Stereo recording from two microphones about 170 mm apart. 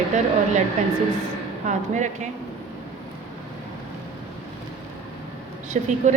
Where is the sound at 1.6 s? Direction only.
45° right (ahead or behind).